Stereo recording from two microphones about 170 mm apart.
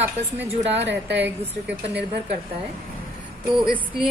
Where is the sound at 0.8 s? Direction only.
90° right.